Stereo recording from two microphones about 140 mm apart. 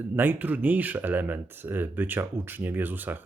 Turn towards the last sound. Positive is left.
turn(degrees=-15)  # may be behind; listen again after turning